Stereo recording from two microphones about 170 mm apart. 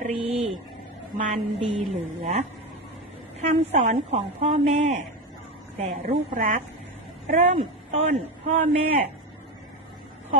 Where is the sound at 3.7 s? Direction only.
40° right (ahead or behind).